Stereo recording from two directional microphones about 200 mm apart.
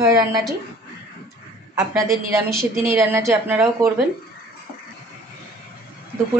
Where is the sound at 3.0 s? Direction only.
10° right (ahead or behind).